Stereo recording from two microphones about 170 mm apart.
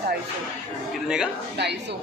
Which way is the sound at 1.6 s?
85° right.